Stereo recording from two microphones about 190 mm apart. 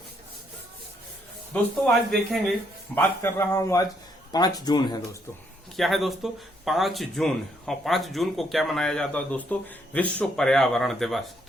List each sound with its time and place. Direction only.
1.5 s speech: centre (ahead or behind)
2.9 s a man's voice: 15° left (ahead or behind)
5.7 s speech: centre (ahead or behind)